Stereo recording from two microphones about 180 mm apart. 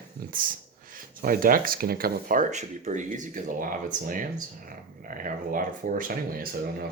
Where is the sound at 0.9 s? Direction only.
50° right (ahead or behind).